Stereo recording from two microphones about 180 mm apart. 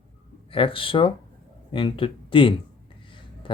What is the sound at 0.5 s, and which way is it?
Speech, 30° left (ahead or behind).